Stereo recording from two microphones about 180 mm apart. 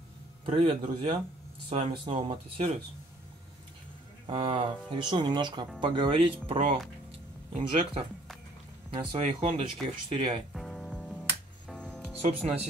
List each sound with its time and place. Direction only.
0.5 s speech: 30° right (ahead or behind)
4.3 s speech: 25° right (ahead or behind)
10.5 s music: centre (ahead or behind)
12.2 s speech: 35° right (ahead or behind)